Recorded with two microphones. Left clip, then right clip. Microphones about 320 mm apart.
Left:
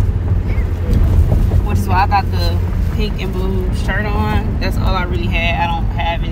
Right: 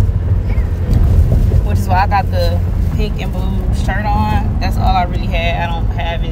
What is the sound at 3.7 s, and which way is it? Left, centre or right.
Vehicle, centre.